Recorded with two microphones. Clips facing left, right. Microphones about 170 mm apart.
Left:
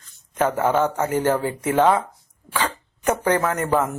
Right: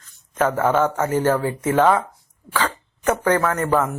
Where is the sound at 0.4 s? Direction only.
20° left (ahead or behind).